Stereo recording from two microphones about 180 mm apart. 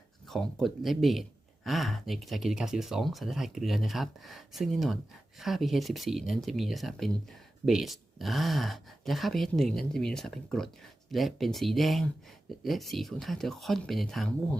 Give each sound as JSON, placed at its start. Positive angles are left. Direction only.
{"t": 0.3, "sound": "speech", "side_deg": 0}